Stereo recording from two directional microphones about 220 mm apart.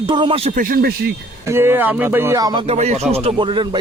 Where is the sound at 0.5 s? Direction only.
40° right (ahead or behind).